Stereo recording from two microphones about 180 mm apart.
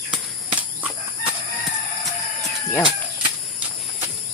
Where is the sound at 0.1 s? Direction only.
10° right (ahead or behind).